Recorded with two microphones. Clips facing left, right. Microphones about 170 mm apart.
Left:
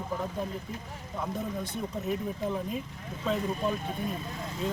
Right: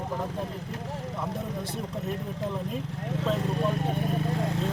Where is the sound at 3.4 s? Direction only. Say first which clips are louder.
Right 2 dB; 75° right (ahead or behind).